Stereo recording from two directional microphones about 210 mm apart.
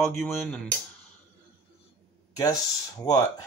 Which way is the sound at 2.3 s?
15° left (ahead or behind).